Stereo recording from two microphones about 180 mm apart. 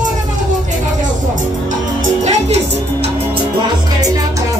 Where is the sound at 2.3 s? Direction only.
35° right (ahead or behind).